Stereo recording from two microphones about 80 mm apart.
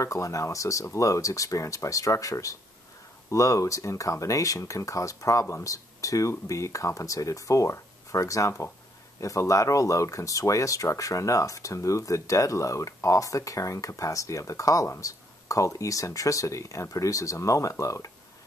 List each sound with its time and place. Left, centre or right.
0.0 s speech: left